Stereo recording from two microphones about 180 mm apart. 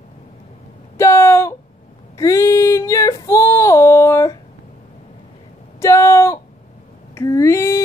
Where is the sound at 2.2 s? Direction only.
15° left (ahead or behind).